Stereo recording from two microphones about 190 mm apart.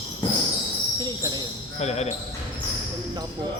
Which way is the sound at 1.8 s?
35° left (ahead or behind).